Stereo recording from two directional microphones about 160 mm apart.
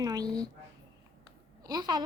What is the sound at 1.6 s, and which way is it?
Speech, 25° right (ahead or behind).